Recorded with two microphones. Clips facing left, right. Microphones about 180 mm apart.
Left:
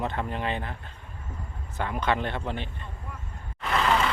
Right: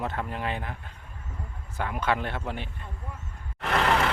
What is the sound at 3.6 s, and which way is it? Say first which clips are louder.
Vehicle: even; 60° right (ahead or behind).